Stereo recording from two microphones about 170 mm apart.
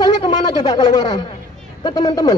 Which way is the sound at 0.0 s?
25° left (ahead or behind).